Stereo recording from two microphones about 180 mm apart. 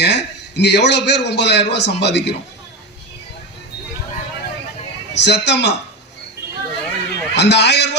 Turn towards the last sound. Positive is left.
turn(degrees=70)  # may be behind; listen again after turning